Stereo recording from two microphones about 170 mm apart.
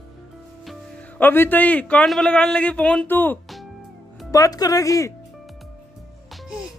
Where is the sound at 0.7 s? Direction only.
10° left (ahead or behind).